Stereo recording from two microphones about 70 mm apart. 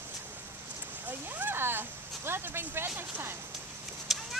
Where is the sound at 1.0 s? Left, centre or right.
Right.